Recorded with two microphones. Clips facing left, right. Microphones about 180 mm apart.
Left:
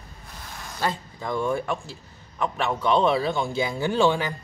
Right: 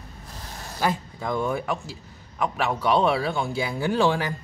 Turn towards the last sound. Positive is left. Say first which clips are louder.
# left 1 dB
turn(degrees=-5)  # may be behind; listen again after turning